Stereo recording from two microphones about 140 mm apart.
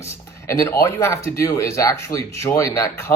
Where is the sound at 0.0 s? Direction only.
20° left (ahead or behind).